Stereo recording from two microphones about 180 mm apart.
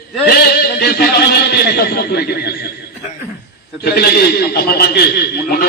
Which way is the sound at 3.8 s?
60° left (ahead or behind).